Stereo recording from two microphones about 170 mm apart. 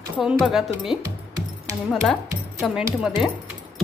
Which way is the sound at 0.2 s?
Centre (ahead or behind).